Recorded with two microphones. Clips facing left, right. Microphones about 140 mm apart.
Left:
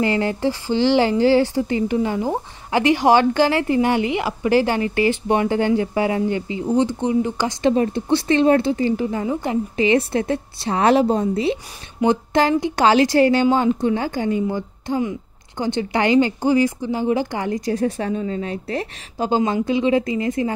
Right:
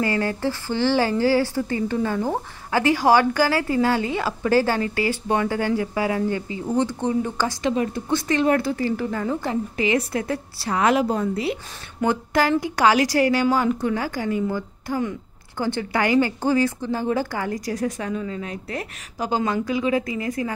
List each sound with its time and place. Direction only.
0.0 s a woman's voice: 20° left (ahead or behind)
7.6 s a woman's voice: 30° left (ahead or behind)